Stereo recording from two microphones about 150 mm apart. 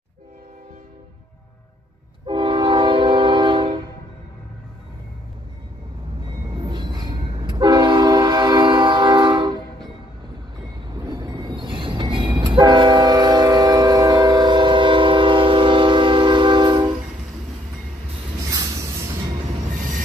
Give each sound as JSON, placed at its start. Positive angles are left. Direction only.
{"t": 2.2, "sound": "train", "side_deg": -35}
{"t": 6.5, "sound": "train", "side_deg": -30}
{"t": 10.9, "sound": "train", "side_deg": -25}